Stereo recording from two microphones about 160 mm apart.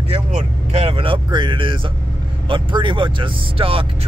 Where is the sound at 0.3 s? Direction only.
40° right (ahead or behind).